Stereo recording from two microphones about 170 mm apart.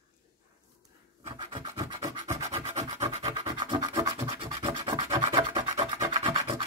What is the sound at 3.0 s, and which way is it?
Scratch, 40° right (ahead or behind).